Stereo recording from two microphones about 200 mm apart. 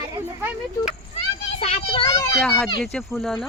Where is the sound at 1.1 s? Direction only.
30° left (ahead or behind).